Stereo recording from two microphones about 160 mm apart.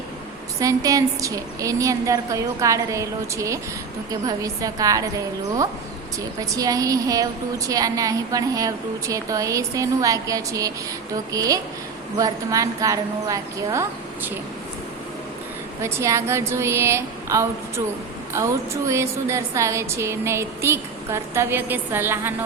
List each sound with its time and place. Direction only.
0.6 s a woman's voice: 20° right (ahead or behind)
15.8 s a woman's voice: 15° right (ahead or behind)